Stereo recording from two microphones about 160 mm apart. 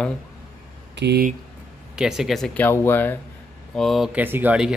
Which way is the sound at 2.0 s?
5° right (ahead or behind).